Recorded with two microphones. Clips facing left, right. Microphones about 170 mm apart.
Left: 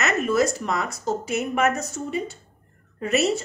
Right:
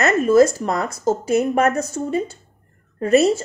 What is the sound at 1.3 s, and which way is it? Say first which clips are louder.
A woman's voice: right 5 dB; 35° right (ahead or behind).